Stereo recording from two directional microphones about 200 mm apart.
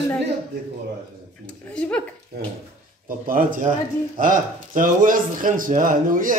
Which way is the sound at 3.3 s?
45° right (ahead or behind).